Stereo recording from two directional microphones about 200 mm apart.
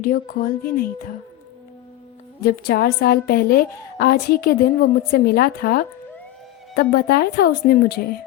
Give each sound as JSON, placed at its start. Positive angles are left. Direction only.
{"t": 0.0, "sound": "a woman's voice", "side_deg": 45}
{"t": 2.4, "sound": "a woman's voice", "side_deg": 50}